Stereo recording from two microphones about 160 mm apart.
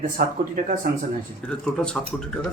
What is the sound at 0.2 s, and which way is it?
Speech, 65° right (ahead or behind).